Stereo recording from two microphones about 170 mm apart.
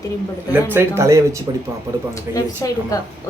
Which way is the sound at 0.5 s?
15° right (ahead or behind).